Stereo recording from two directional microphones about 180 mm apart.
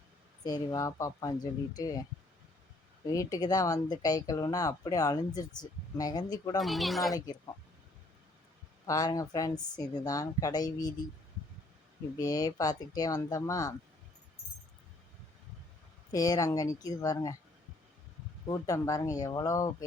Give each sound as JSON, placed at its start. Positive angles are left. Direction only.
{"t": 0.4, "sound": "speech", "side_deg": 20}
{"t": 3.1, "sound": "speech", "side_deg": 20}
{"t": 6.6, "sound": "speech", "side_deg": 0}
{"t": 8.9, "sound": "speech", "side_deg": 20}
{"t": 12.1, "sound": "speech", "side_deg": 20}
{"t": 16.1, "sound": "speech", "side_deg": 20}
{"t": 18.4, "sound": "speech", "side_deg": 20}